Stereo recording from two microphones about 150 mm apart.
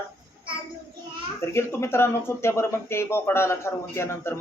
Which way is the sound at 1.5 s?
15° left (ahead or behind).